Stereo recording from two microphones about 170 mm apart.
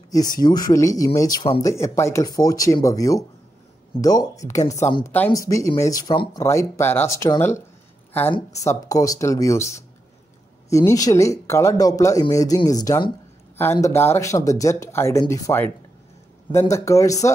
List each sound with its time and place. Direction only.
0.1 s speech: 20° left (ahead or behind)